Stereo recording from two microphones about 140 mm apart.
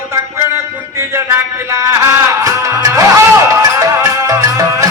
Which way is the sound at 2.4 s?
20° right (ahead or behind).